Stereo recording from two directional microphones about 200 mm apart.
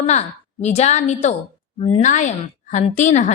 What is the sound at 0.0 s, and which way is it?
A woman's voice, 35° left (ahead or behind).